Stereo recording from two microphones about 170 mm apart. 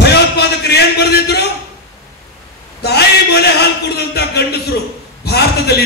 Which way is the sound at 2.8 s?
70° left (ahead or behind).